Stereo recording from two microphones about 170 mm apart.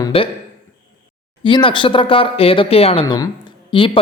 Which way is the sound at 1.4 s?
30° left (ahead or behind).